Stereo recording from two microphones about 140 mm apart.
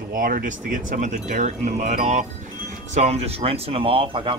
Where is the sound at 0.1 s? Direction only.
85° right.